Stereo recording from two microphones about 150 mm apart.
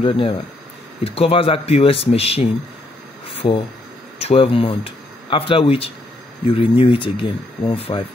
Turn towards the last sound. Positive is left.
turn(degrees=35)  # may be behind; listen again after turning